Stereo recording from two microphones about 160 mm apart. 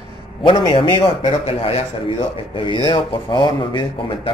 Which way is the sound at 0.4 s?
30° left (ahead or behind).